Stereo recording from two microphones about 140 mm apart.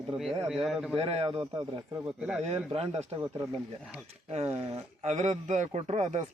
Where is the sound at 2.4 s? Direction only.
50° right (ahead or behind).